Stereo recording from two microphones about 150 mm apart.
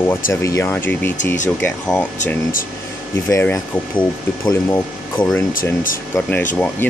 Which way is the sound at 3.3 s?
15° left (ahead or behind).